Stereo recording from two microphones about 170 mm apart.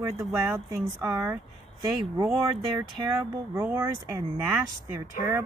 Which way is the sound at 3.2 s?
15° right (ahead or behind).